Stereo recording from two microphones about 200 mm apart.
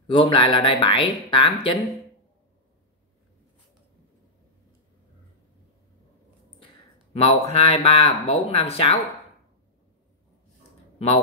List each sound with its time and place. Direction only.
0.0 s speech: 25° left (ahead or behind)
7.2 s speech: 30° left (ahead or behind)